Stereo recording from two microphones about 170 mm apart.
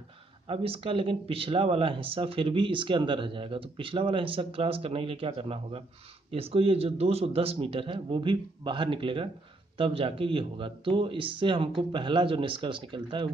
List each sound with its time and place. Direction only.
0.5 s speech: 35° right (ahead or behind)